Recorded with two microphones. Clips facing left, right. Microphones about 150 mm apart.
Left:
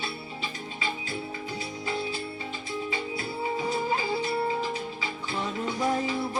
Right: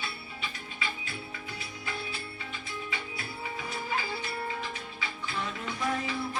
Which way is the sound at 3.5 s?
30° left (ahead or behind).